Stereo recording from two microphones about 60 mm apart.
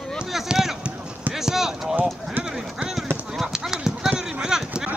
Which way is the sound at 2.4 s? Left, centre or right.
Centre.